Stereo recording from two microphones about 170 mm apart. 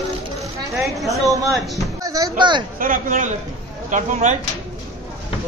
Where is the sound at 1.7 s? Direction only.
20° right (ahead or behind).